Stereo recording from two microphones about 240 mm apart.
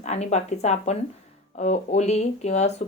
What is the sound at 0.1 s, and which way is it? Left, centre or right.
Speech, left.